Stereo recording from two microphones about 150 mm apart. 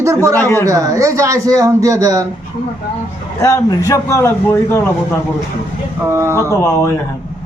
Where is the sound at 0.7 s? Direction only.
20° right (ahead or behind).